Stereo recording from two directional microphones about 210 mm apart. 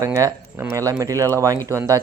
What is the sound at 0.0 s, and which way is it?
Speech, 15° right (ahead or behind).